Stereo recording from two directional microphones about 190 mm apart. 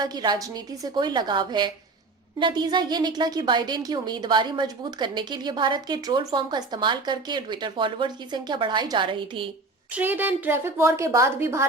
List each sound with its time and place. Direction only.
0.0 s a woman's voice: 25° right (ahead or behind)
9.9 s a woman's voice: 10° right (ahead or behind)